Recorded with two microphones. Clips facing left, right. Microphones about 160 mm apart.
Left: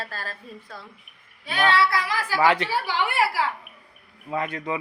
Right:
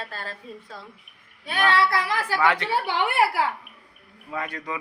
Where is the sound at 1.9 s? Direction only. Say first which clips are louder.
Right 1 dB; 55° right (ahead or behind).